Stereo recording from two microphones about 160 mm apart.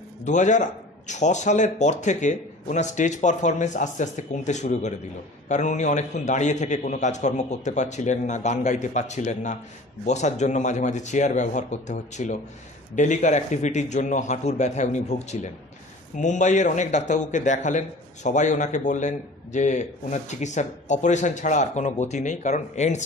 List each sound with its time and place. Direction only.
0.2 s a man's voice: 50° left (ahead or behind)